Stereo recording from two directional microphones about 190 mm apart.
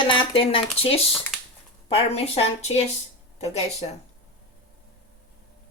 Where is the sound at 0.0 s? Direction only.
25° left (ahead or behind).